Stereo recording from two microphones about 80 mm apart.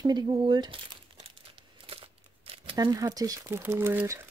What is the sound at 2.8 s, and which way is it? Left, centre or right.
Speech, right.